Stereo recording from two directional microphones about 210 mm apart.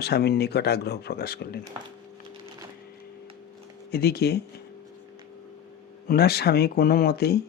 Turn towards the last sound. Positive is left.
turn(degrees=50)  # may be behind; listen again after turning